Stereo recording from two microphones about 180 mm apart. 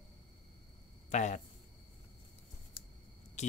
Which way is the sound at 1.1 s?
40° left (ahead or behind).